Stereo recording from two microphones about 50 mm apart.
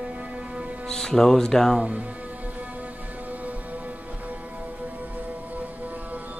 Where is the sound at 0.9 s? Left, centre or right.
Centre.